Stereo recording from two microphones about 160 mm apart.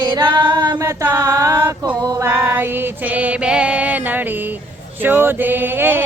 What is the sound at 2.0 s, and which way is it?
Music, 20° right (ahead or behind).